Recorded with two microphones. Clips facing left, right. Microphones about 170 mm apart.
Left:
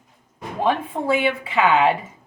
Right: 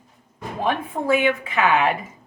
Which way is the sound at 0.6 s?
30° left (ahead or behind).